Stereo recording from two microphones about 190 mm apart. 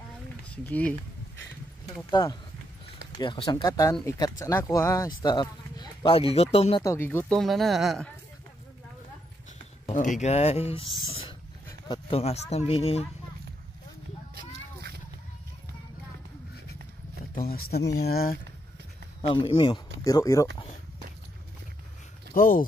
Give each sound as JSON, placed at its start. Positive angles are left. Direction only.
{"t": 0.5, "sound": "speech", "side_deg": 5}
{"t": 2.0, "sound": "speech", "side_deg": 25}
{"t": 6.8, "sound": "speech", "side_deg": 15}
{"t": 9.8, "sound": "speech", "side_deg": 40}
{"t": 11.1, "sound": "dog", "side_deg": 30}
{"t": 11.9, "sound": "speech", "side_deg": 30}
{"t": 14.3, "sound": "a sound", "side_deg": -55}
{"t": 17.5, "sound": "speech", "side_deg": 55}
{"t": 19.2, "sound": "speech", "side_deg": 25}
{"t": 22.3, "sound": "speech", "side_deg": 45}